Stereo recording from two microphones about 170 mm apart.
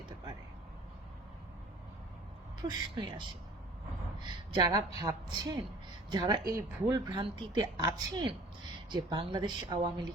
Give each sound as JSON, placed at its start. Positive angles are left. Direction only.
{"t": 2.6, "sound": "a woman's voice", "side_deg": -30}
{"t": 4.5, "sound": "a woman's voice", "side_deg": -25}
{"t": 7.1, "sound": "a woman's voice", "side_deg": -30}